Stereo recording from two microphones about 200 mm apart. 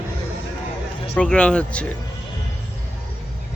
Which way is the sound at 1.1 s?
5° left (ahead or behind).